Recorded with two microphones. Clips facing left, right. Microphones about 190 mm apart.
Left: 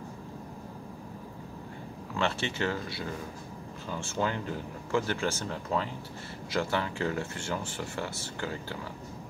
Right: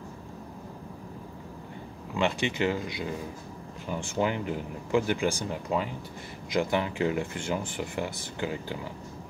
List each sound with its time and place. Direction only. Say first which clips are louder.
2.1 s speech: right 4 dB; 15° right (ahead or behind)